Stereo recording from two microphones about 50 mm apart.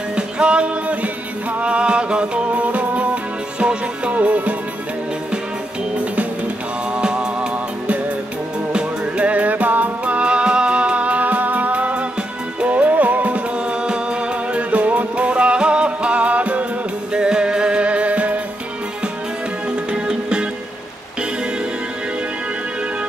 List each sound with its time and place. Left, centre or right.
0.1 s music: right
5.9 s music: right
8.7 s music: right
19.7 s music: centre